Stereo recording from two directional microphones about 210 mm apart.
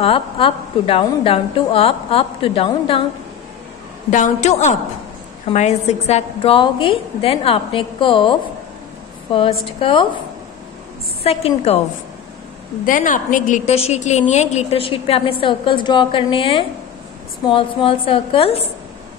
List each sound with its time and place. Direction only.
0.0 s a woman's voice: 25° left (ahead or behind)
4.1 s a woman's voice: 35° left (ahead or behind)
11.2 s a woman's voice: 30° left (ahead or behind)
12.8 s a woman's voice: 40° left (ahead or behind)